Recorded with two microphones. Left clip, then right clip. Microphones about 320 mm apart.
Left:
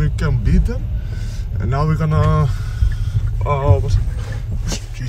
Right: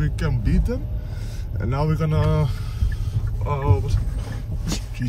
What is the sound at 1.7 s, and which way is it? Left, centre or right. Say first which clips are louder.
Speech: left 4 dB; centre.